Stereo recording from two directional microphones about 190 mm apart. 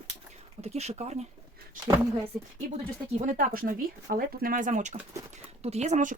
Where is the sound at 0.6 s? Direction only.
35° right (ahead or behind).